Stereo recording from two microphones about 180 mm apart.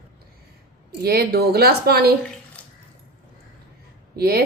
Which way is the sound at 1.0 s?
60° right (ahead or behind).